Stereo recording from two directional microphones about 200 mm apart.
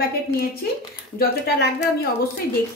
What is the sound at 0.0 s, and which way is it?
A woman's voice, 50° left (ahead or behind).